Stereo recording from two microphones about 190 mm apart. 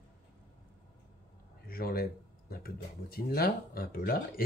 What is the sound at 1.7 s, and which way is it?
Speech, 50° left (ahead or behind).